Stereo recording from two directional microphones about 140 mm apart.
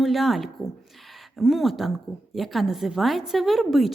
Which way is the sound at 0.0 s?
Centre (ahead or behind).